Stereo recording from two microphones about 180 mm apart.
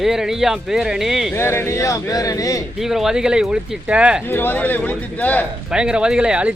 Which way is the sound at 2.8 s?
Centre (ahead or behind).